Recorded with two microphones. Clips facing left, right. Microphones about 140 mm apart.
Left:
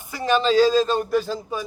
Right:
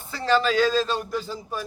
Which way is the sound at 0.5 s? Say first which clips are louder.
Left 5 dB; 35° left (ahead or behind).